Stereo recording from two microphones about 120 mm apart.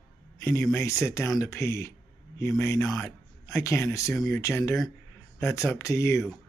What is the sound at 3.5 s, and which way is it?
A woman's voice, 20° left (ahead or behind).